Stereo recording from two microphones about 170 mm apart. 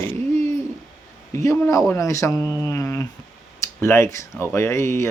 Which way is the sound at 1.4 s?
20° left (ahead or behind).